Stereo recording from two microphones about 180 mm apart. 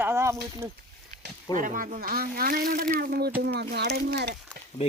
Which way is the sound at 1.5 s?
50° right (ahead or behind).